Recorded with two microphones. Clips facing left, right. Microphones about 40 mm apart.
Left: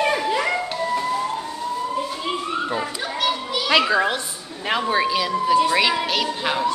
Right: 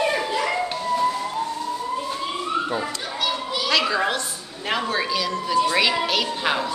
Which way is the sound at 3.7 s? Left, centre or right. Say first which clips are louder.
Left 4 dB; left.